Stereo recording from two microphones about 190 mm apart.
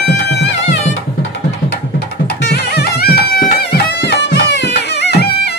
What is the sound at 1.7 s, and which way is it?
Music, 60° left (ahead or behind).